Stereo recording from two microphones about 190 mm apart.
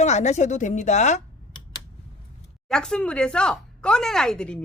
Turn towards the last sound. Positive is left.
turn(degrees=5)  # may be behind; listen again after turning